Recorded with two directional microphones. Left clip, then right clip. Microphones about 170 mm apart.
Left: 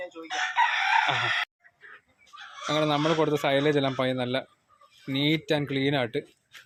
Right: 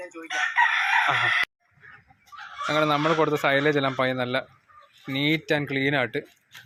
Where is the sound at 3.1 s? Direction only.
10° left (ahead or behind).